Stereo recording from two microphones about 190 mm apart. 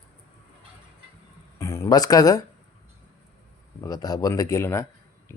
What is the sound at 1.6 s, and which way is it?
Speech, 15° left (ahead or behind).